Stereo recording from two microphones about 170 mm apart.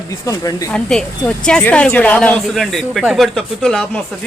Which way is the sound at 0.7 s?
5° left (ahead or behind).